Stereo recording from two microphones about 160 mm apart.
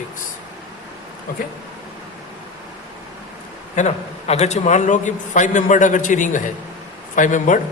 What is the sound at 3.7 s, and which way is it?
A man's voice, 45° left (ahead or behind).